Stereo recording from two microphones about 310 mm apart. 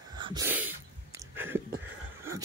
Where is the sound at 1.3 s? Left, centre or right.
Centre.